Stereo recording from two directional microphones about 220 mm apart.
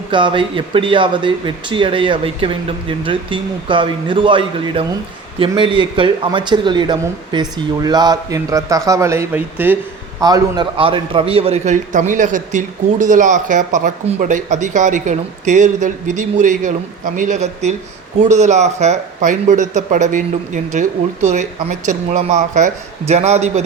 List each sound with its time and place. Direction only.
0.1 s a man's voice: 20° right (ahead or behind)